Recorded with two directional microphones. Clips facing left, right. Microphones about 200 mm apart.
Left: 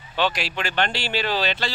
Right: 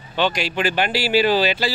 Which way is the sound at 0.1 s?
Centre (ahead or behind).